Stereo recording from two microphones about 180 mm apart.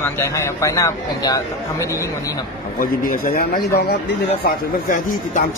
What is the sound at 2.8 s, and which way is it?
Speech, 50° left (ahead or behind).